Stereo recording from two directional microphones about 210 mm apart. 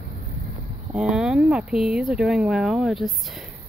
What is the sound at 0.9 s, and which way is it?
Speech, 5° right (ahead or behind).